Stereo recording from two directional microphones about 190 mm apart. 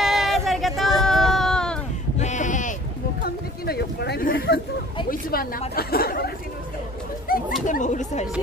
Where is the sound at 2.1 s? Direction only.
40° left (ahead or behind).